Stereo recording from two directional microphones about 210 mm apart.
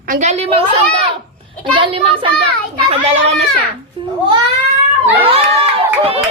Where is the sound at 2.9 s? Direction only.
30° right (ahead or behind).